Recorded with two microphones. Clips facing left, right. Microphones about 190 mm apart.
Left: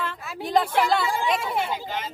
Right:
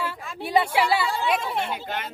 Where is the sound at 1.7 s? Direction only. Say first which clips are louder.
Left 1 dB; 60° right (ahead or behind).